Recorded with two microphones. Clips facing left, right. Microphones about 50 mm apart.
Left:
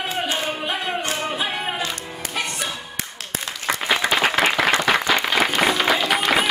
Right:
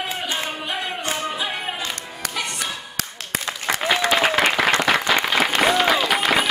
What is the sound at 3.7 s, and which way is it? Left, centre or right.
Applause, centre.